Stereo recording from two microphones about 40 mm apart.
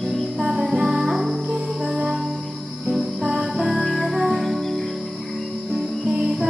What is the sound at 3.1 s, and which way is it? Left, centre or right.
Music, centre.